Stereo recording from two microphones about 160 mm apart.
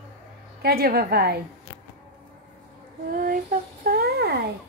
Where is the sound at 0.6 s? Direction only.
75° right (ahead or behind).